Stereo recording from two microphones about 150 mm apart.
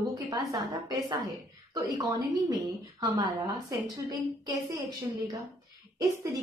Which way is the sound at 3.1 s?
25° right (ahead or behind).